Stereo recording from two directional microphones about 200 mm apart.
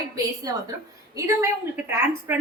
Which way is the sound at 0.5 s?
20° right (ahead or behind).